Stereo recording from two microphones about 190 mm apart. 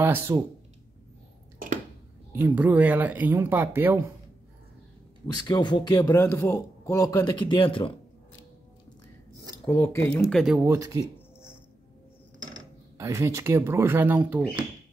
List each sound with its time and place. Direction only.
0.0 s speech: 10° right (ahead or behind)
2.3 s speech: 10° right (ahead or behind)
5.2 s a man's voice: 20° left (ahead or behind)
9.7 s speech: 10° left (ahead or behind)
10.6 s speech: 15° right (ahead or behind)
12.9 s speech: 15° right (ahead or behind)